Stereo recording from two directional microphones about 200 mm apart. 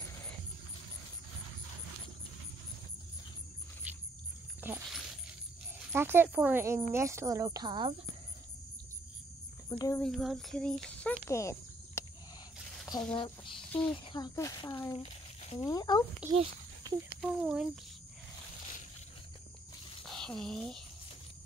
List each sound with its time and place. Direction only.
4.6 s a sound: 10° right (ahead or behind)
5.9 s speech: 10° right (ahead or behind)
9.7 s speech: 15° left (ahead or behind)
10.0 s speech: centre (ahead or behind)
11.2 s cricket: 15° left (ahead or behind)
13.1 s speech: 25° left (ahead or behind)
13.7 s speech: 5° left (ahead or behind)
13.9 s speech: 20° left (ahead or behind)
16.2 s speech: 5° right (ahead or behind)
20.1 s speech: 5° left (ahead or behind)